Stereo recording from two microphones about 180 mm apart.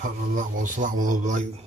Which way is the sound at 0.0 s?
45° right (ahead or behind).